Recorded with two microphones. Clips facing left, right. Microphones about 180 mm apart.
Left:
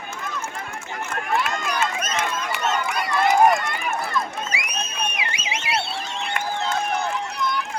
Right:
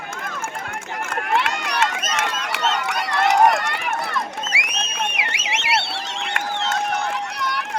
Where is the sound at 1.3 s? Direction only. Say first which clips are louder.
Right 2 dB; 75° right (ahead or behind).